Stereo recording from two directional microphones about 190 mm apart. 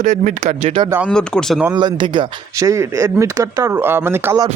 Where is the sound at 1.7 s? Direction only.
25° right (ahead or behind).